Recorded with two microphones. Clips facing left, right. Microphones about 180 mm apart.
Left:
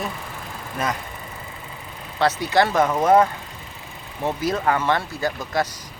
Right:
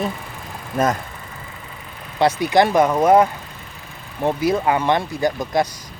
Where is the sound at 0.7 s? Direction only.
45° right (ahead or behind).